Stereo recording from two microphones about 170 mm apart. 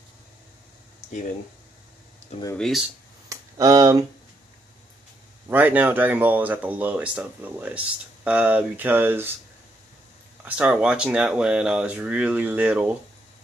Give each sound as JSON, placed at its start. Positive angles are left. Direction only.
{"t": 2.5, "sound": "speech", "side_deg": 0}
{"t": 3.3, "sound": "a sound", "side_deg": -20}
{"t": 5.5, "sound": "speech", "side_deg": -10}
{"t": 10.4, "sound": "speech", "side_deg": -5}